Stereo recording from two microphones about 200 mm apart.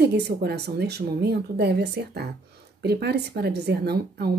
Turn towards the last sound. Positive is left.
turn(degrees=-50)  # may be behind; listen again after turning